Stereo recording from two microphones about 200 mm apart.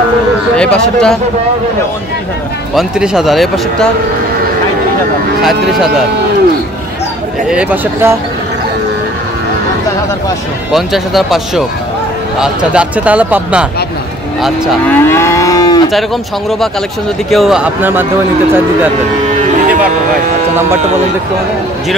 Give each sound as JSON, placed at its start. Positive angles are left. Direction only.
{"t": 0.6, "sound": "speech", "side_deg": 5}
{"t": 2.7, "sound": "speech", "side_deg": 0}
{"t": 5.4, "sound": "speech", "side_deg": 0}
{"t": 7.4, "sound": "speech", "side_deg": -5}
{"t": 10.7, "sound": "speech", "side_deg": 0}
{"t": 15.0, "sound": "livestock", "side_deg": 15}
{"t": 15.9, "sound": "speech", "side_deg": 0}